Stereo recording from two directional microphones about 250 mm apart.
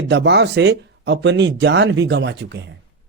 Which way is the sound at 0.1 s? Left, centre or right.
Right.